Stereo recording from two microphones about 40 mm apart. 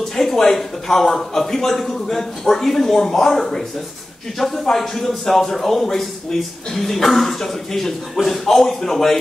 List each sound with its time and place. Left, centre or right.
0.1 s a man's voice: centre
4.7 s a man's voice: centre